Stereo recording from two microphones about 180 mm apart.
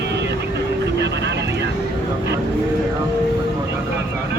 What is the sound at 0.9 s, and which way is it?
Vehicle, 75° right (ahead or behind).